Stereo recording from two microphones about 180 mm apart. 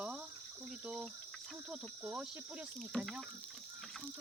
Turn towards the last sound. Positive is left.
turn(degrees=0)  # may be behind; listen again after turning